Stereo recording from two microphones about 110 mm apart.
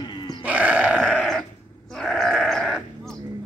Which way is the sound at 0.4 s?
10° right (ahead or behind).